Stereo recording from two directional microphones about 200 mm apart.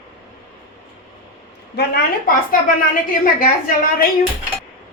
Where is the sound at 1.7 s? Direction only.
45° left (ahead or behind).